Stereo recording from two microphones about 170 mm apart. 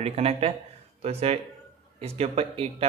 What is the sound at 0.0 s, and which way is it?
A man's voice, 35° right (ahead or behind).